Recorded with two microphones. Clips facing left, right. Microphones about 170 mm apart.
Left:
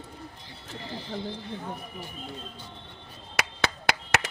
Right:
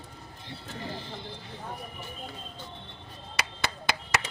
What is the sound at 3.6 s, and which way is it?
Finger snapping, 70° left (ahead or behind).